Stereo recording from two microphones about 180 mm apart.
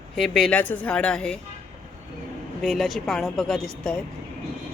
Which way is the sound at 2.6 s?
Centre (ahead or behind).